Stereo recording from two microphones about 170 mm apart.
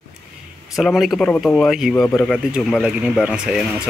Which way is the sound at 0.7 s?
Centre (ahead or behind).